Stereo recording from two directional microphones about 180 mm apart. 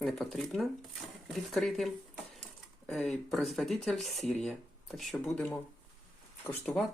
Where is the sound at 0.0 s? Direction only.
Centre (ahead or behind).